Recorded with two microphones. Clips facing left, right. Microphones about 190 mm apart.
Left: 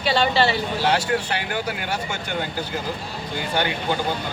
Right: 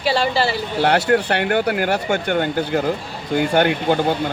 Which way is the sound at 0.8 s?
60° right (ahead or behind).